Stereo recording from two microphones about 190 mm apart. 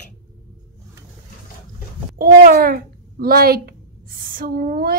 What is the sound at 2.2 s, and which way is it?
A child's voice, 55° right (ahead or behind).